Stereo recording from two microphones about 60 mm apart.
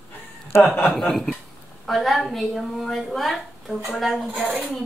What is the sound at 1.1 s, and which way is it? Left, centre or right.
Speech, centre.